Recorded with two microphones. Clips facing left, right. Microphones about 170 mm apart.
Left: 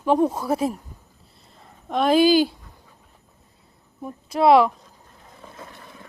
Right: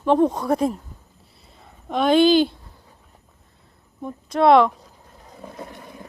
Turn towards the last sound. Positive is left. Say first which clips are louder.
# right 5 dB
turn(degrees=-20)  # may be behind; listen again after turning